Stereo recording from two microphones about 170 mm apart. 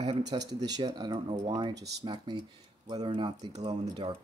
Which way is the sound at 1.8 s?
75° right (ahead or behind).